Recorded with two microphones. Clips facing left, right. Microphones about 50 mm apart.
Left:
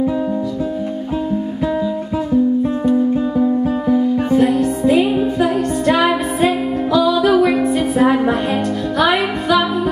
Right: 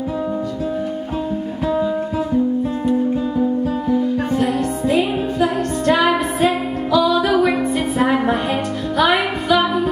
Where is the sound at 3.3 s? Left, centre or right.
Centre.